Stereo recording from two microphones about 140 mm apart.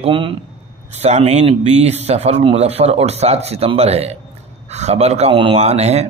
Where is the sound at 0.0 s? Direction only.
40° right (ahead or behind).